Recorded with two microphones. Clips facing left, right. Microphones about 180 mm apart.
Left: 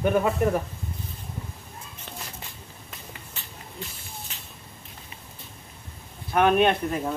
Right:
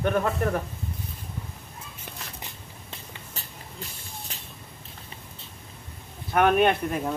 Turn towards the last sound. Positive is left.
turn(degrees=0)  # may be behind; listen again after turning